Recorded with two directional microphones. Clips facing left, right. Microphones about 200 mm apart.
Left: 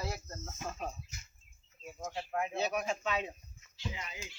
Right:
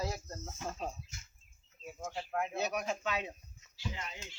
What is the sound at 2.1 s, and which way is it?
Speech, 5° left (ahead or behind).